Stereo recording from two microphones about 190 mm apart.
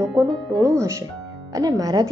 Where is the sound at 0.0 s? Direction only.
15° right (ahead or behind).